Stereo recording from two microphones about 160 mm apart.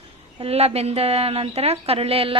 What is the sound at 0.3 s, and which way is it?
A woman's voice, 40° right (ahead or behind).